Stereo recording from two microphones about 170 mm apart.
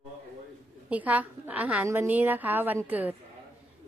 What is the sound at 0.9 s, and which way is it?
A woman's voice, 10° right (ahead or behind).